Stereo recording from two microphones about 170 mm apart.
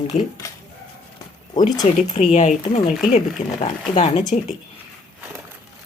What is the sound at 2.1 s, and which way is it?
A woman's voice, 45° left (ahead or behind).